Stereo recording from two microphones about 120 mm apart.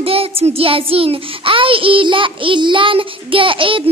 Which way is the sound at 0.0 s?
55° right (ahead or behind).